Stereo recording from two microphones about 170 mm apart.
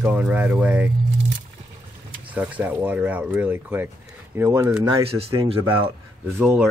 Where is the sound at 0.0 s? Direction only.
10° right (ahead or behind).